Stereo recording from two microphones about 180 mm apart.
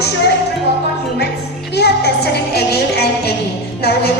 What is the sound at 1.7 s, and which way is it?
Music, 65° left (ahead or behind).